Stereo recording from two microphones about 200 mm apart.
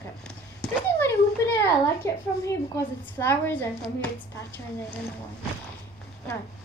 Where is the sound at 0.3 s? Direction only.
5° left (ahead or behind).